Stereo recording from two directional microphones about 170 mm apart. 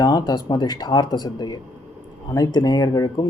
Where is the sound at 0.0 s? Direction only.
25° left (ahead or behind).